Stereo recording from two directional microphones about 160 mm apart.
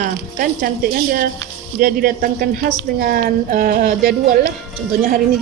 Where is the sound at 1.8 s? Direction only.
65° right (ahead or behind).